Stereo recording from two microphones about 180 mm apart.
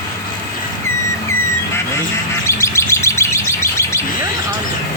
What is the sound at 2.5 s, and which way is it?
Chirp, 15° left (ahead or behind).